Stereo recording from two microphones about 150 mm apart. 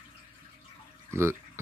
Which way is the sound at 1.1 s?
15° right (ahead or behind).